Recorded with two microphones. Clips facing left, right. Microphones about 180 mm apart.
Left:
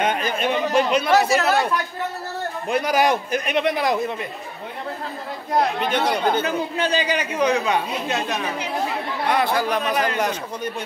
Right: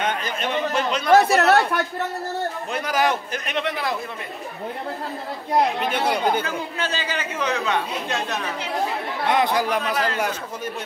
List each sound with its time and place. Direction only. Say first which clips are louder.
0.0 s speech: left 4 dB; 10° left (ahead or behind)
1.1 s speech: right 5 dB; 65° right (ahead or behind)
2.7 s speech: left 4 dB; 15° left (ahead or behind)
5.8 s speech: left 1 dB; 5° right (ahead or behind)
6.4 s speech: left 5 dB; 15° left (ahead or behind)
9.3 s speech: even; 20° right (ahead or behind)
9.8 s speech: left 2 dB; 15° left (ahead or behind)
10.1 s speech: left 2 dB; 5° right (ahead or behind)